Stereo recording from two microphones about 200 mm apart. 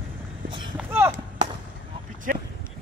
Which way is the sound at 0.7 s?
10° right (ahead or behind).